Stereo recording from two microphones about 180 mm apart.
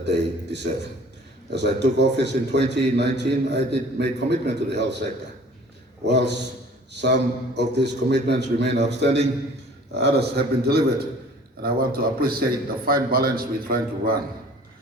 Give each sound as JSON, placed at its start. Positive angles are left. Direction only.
{"t": 0.0, "sound": "a man's voice", "side_deg": -70}
{"t": 6.1, "sound": "a man's voice", "side_deg": -70}